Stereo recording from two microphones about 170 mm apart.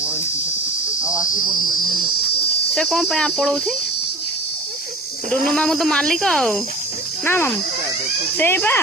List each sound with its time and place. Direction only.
1.0 s cricket: 5° right (ahead or behind)
1.3 s cricket: 25° left (ahead or behind)
2.7 s speech: centre (ahead or behind)
5.3 s speech: 5° left (ahead or behind)